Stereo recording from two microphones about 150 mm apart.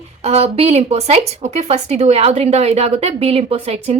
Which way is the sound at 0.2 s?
45° right (ahead or behind).